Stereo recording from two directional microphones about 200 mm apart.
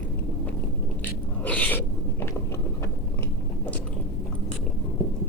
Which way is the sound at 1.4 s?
5° left (ahead or behind).